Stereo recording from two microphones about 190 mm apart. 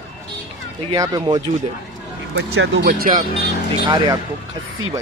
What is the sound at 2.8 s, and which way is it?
Speech, 45° right (ahead or behind).